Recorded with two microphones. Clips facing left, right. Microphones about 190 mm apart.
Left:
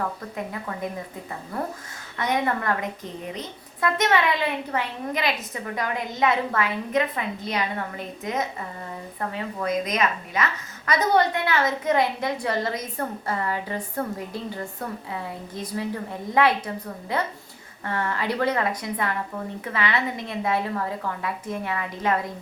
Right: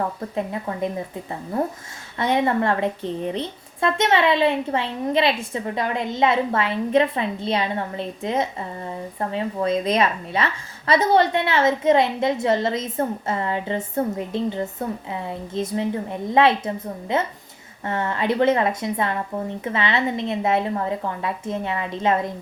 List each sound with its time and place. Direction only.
0.3 s a woman's voice: 25° right (ahead or behind)